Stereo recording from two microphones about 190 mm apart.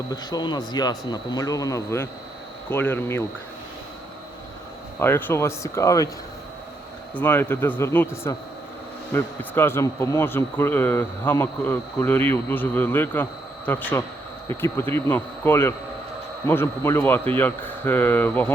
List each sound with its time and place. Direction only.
0.1 s speech: 20° left (ahead or behind)
4.9 s speech: 10° left (ahead or behind)
7.2 s speech: 10° left (ahead or behind)